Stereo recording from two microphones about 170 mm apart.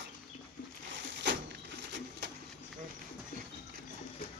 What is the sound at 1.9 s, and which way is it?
Printer, 90° right.